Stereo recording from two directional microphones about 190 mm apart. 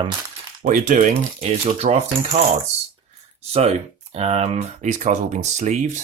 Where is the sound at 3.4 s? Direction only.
35° right (ahead or behind).